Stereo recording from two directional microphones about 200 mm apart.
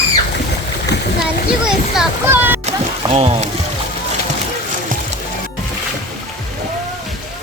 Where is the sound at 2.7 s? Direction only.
30° right (ahead or behind).